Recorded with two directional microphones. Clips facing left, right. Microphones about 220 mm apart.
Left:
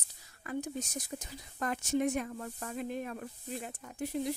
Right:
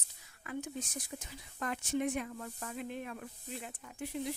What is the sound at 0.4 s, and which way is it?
Speech, 40° left (ahead or behind).